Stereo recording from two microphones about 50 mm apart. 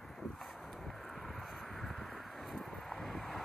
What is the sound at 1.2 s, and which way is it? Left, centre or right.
Vehicle, centre.